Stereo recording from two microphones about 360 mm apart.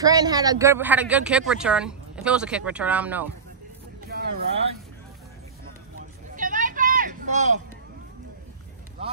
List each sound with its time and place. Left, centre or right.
0.0 s speech: centre
4.1 s vehicle: right